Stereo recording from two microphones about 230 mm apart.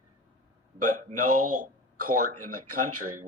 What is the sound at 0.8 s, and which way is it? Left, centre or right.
Speech, right.